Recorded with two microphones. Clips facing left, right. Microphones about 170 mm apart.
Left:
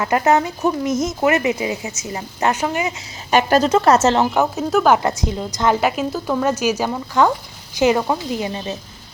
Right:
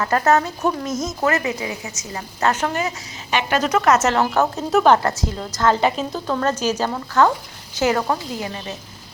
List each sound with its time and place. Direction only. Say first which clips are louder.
0.0 s speech: left 1 dB; 15° left (ahead or behind)
3.2 s speech: left 6 dB; 40° left (ahead or behind)
3.6 s speech: left 3 dB; 30° left (ahead or behind)
4.2 s speech: left 1 dB; 10° left (ahead or behind)
4.7 s a woman's voice: right 1 dB; centre (ahead or behind)
5.0 s speech: left 2 dB; 15° left (ahead or behind)